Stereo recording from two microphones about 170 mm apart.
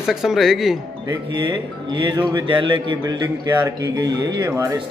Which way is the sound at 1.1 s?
25° right (ahead or behind).